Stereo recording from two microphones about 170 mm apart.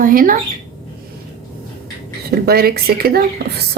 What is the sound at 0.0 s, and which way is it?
Speech, 55° right (ahead or behind).